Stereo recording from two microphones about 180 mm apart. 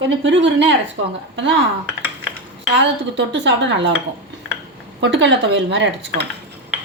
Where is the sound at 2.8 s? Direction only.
85° right.